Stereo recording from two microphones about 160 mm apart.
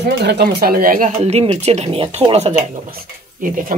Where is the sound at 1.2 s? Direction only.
40° right (ahead or behind).